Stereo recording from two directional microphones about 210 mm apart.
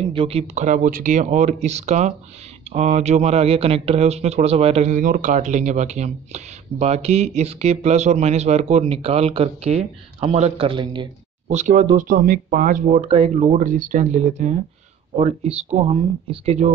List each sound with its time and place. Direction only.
0.1 s speech: 25° right (ahead or behind)
11.4 s speech: 35° right (ahead or behind)